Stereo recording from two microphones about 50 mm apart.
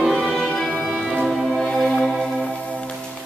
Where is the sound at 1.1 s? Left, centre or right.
Centre.